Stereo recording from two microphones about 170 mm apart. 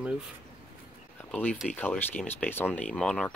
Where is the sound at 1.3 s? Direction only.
10° left (ahead or behind).